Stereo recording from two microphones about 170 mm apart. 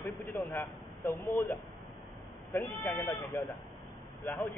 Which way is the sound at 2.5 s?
20° left (ahead or behind).